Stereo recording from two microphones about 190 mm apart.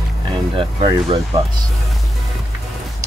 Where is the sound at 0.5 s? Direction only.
25° right (ahead or behind).